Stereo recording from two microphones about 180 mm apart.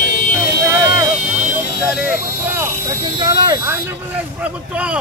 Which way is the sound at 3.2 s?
25° right (ahead or behind).